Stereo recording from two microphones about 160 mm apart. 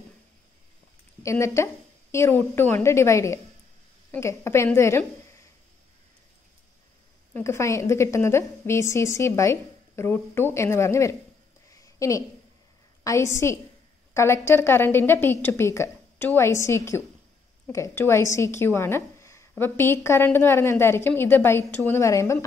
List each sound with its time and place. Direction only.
1.2 s a woman's voice: 20° left (ahead or behind)
7.3 s a woman's voice: 15° left (ahead or behind)
11.7 s a sound: 20° left (ahead or behind)
13.0 s a woman's voice: 20° left (ahead or behind)